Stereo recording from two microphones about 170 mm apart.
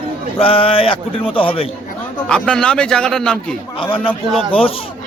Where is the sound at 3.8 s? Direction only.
30° left (ahead or behind).